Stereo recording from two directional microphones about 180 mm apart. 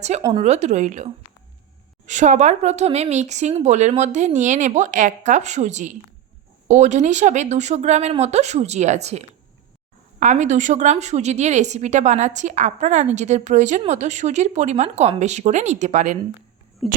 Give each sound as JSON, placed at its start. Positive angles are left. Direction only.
{"t": 0.2, "sound": "speech", "side_deg": -20}
{"t": 0.4, "sound": "a woman's voice", "side_deg": -35}
{"t": 16.8, "sound": "speech", "side_deg": 0}